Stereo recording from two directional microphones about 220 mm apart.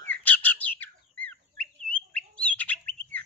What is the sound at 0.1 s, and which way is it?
Bird, 5° left (ahead or behind).